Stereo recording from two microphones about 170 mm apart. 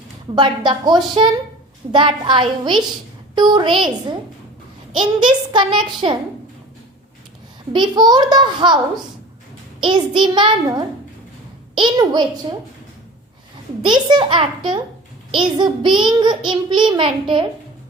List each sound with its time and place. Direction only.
0.3 s a child's voice: 25° right (ahead or behind)
4.9 s a child's voice: 25° right (ahead or behind)
7.7 s a child's voice: 25° right (ahead or behind)
9.8 s a child's voice: 25° right (ahead or behind)
13.8 s a child's voice: 25° right (ahead or behind)